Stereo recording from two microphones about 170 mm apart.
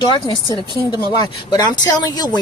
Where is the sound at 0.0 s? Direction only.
25° left (ahead or behind).